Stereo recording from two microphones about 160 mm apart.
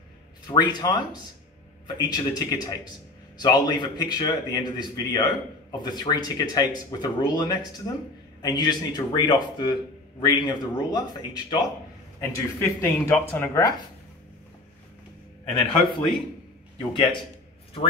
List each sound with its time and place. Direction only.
0.5 s a man's voice: 25° left (ahead or behind)
12.2 s speech: 15° left (ahead or behind)
15.5 s a man's voice: 30° left (ahead or behind)